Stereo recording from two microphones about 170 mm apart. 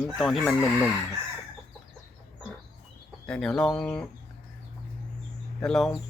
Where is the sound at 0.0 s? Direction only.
Centre (ahead or behind).